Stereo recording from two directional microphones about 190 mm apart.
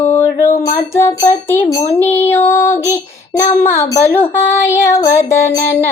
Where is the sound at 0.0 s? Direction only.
10° left (ahead or behind).